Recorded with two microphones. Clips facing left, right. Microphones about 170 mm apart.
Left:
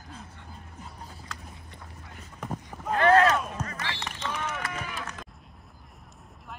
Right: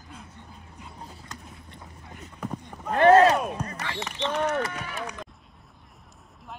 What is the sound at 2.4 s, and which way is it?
Clip-clop, 5° left (ahead or behind).